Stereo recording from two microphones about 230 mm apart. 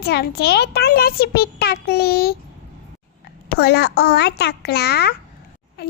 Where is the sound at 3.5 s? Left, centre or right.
Left.